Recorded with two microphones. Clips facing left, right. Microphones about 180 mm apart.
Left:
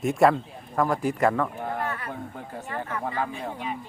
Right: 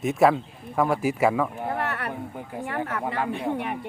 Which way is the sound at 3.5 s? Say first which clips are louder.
Right 4 dB; 65° right (ahead or behind).